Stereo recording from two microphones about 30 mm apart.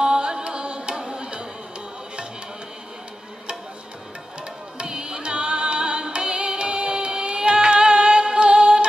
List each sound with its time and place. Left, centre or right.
0.0 s music: right
4.7 s music: right